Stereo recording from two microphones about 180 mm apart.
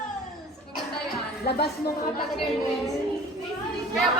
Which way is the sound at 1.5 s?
65° left (ahead or behind).